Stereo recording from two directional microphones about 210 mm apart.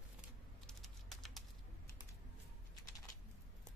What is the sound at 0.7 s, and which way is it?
Typing, centre (ahead or behind).